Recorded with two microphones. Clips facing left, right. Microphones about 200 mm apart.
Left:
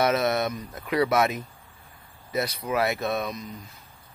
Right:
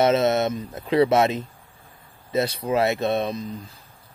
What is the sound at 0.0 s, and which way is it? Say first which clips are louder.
A man's voice: right 4 dB; 25° right (ahead or behind).